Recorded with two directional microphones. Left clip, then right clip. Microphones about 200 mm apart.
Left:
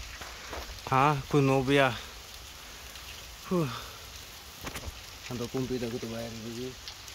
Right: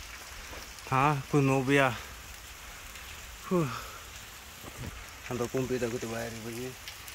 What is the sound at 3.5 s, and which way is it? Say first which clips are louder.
Speech: right 1 dB; centre (ahead or behind).